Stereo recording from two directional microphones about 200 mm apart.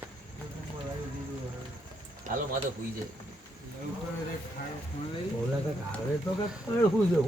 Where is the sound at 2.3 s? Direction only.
40° right (ahead or behind).